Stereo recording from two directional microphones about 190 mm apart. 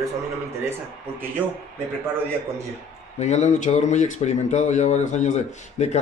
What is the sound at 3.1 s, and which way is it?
Speech, 35° left (ahead or behind).